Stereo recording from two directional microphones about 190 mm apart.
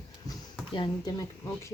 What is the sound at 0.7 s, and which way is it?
Speech, 25° left (ahead or behind).